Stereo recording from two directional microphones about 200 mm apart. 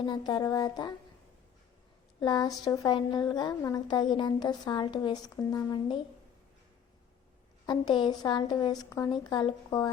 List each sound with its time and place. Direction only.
0.0 s a woman's voice: 20° left (ahead or behind)
2.2 s a woman's voice: 20° left (ahead or behind)
7.7 s a woman's voice: 25° left (ahead or behind)